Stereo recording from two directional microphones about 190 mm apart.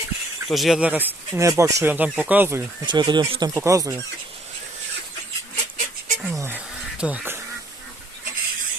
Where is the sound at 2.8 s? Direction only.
25° right (ahead or behind).